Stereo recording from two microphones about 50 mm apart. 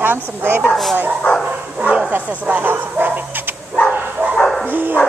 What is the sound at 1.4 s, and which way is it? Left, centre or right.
Bow-wow, right.